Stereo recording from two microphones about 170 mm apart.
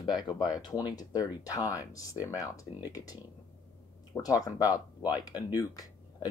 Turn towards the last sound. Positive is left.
turn(degrees=20)  # may be behind; listen again after turning